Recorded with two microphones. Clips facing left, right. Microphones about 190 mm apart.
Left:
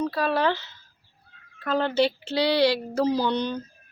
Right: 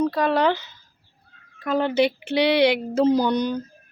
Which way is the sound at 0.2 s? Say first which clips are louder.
Right 3 dB; 15° right (ahead or behind).